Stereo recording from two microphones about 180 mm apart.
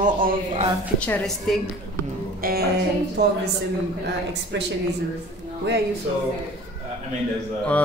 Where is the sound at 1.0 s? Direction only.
10° left (ahead or behind).